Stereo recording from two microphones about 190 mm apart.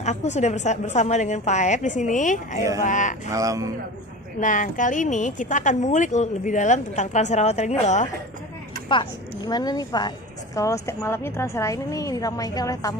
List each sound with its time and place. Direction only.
0.0 s speech: 35° left (ahead or behind)
3.3 s speech: 15° right (ahead or behind)
4.4 s speech: 40° left (ahead or behind)
8.8 s a woman's voice: 25° left (ahead or behind)